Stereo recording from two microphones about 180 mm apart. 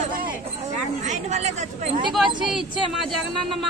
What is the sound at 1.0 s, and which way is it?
Speech, 40° right (ahead or behind).